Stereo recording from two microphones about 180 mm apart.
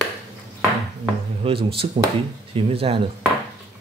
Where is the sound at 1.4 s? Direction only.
30° right (ahead or behind).